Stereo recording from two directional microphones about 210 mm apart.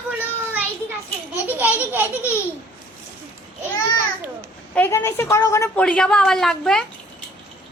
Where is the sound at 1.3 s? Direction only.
10° right (ahead or behind).